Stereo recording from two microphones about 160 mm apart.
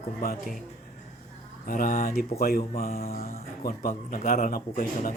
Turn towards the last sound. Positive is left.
turn(degrees=55)  # may be behind; listen again after turning